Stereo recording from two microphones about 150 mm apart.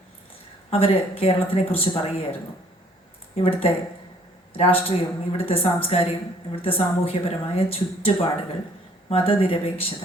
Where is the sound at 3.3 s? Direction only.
40° left (ahead or behind).